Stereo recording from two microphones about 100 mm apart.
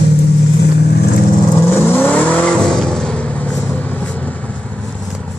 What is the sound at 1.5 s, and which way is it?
Vehicle, 20° left (ahead or behind).